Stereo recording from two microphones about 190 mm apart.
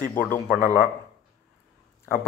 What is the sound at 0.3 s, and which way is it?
Speech, 10° left (ahead or behind).